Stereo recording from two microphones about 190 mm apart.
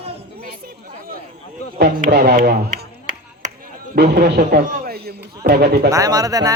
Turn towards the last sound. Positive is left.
turn(degrees=-20)  # may be behind; listen again after turning